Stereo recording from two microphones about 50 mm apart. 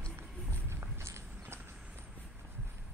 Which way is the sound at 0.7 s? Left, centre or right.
Right.